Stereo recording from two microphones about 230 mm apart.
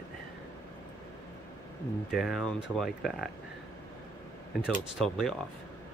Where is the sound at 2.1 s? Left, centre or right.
Centre.